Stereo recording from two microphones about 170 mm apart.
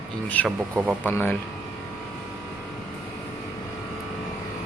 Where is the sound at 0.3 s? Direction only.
10° left (ahead or behind).